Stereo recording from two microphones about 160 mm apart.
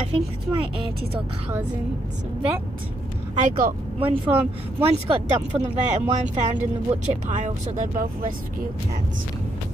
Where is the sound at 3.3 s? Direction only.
50° right (ahead or behind).